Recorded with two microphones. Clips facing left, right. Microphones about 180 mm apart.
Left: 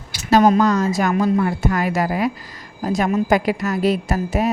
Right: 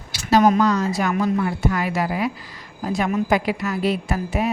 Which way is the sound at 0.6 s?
45° left (ahead or behind).